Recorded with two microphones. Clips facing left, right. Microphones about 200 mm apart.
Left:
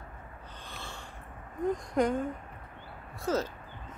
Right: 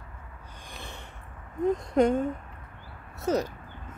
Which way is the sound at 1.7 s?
25° right (ahead or behind).